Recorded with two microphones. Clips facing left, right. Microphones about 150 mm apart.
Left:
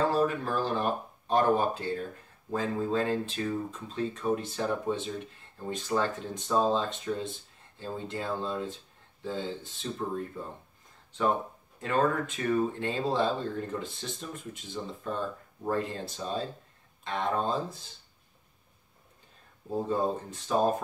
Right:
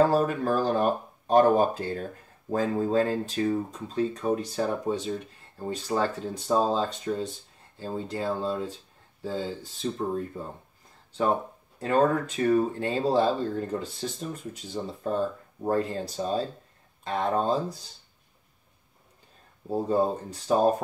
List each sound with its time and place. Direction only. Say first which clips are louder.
0.1 s speech: right 3 dB; 45° right (ahead or behind)
11.8 s speech: right 4 dB; 40° right (ahead or behind)
19.7 s speech: right 4 dB; 35° right (ahead or behind)